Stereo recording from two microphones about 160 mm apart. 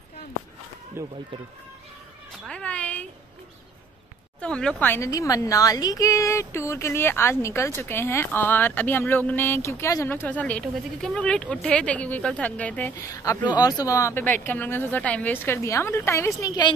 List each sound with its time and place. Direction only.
1.0 s speech: 15° right (ahead or behind)
2.4 s cat: 5° left (ahead or behind)
4.4 s a woman's voice: 5° left (ahead or behind); by 16.7 s 25° left (ahead or behind)